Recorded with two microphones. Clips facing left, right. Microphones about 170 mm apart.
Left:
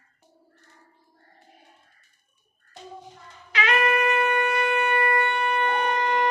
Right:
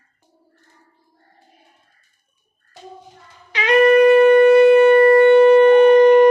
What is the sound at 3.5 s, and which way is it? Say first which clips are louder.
Shofar: right 12 dB; 25° right (ahead or behind).